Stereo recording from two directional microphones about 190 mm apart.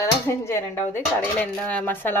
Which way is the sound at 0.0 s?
15° left (ahead or behind).